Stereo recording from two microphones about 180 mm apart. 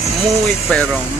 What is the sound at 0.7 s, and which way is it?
Speech, 5° left (ahead or behind).